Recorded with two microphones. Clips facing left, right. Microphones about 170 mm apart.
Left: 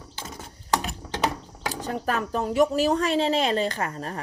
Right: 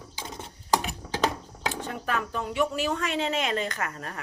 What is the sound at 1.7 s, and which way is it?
Speech, 40° left (ahead or behind).